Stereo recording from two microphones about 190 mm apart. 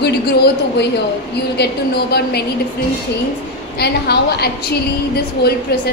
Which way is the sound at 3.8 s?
60° left (ahead or behind).